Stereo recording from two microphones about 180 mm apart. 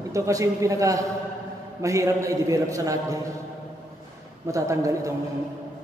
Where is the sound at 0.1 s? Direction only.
20° right (ahead or behind).